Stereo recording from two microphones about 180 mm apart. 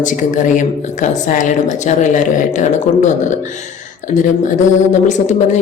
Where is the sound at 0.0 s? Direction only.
45° left (ahead or behind).